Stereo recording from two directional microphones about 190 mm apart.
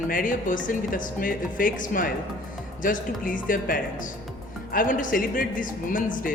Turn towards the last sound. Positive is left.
turn(degrees=45)  # may be behind; listen again after turning